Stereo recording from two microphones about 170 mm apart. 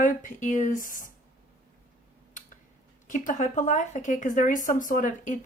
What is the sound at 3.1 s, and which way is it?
A woman's voice, 50° left (ahead or behind).